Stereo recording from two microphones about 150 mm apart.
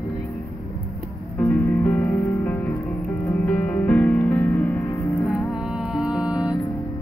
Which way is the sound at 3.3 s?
10° left (ahead or behind).